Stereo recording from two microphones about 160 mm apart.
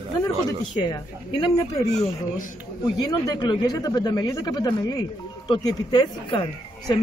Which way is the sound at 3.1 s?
25° left (ahead or behind).